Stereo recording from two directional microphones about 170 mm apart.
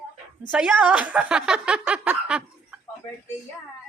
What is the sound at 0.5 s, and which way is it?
Speech, 10° right (ahead or behind).